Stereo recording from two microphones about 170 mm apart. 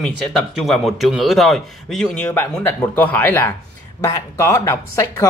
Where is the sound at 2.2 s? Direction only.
10° left (ahead or behind).